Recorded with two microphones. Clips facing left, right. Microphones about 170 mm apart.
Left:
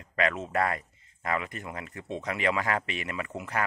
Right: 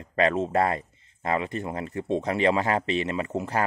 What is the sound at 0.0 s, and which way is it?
Speech, 30° right (ahead or behind).